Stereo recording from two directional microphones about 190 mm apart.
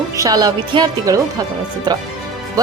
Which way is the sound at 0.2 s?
20° right (ahead or behind).